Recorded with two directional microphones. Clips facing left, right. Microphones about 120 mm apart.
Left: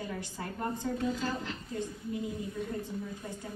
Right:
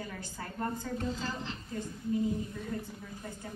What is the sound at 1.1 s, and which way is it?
Speech, 30° right (ahead or behind).